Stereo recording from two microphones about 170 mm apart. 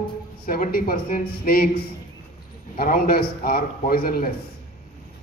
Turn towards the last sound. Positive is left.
turn(degrees=60)  # may be behind; listen again after turning